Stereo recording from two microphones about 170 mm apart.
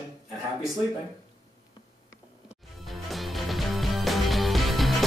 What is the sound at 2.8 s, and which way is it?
Music, centre (ahead or behind).